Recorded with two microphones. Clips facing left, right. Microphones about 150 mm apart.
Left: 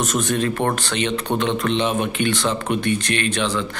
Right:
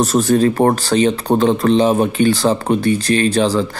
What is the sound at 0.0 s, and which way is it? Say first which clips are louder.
Speech: right 8 dB; 35° right (ahead or behind).